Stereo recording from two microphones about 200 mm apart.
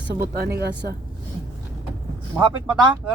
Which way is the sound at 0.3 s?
55° right (ahead or behind).